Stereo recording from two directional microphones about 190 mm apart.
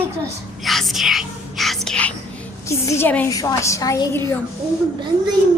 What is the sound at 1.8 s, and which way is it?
A woman's voice, 5° left (ahead or behind).